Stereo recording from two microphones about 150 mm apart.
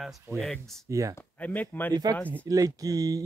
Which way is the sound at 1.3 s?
10° left (ahead or behind).